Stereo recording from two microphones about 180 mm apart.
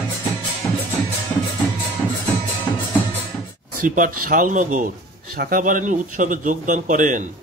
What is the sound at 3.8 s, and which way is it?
Speech, 50° right (ahead or behind).